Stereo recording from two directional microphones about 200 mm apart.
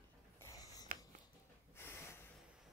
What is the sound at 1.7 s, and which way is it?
Snort, 10° left (ahead or behind).